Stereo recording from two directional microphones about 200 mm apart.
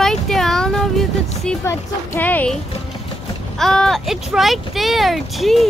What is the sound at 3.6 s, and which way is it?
Speech, centre (ahead or behind).